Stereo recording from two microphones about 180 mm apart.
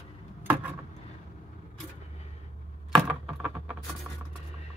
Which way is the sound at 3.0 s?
5° right (ahead or behind).